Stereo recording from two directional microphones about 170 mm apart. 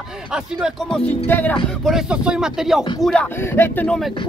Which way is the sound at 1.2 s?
10° left (ahead or behind).